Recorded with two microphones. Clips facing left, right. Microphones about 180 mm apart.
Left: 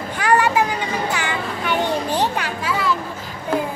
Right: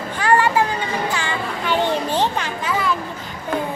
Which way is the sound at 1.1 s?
15° left (ahead or behind).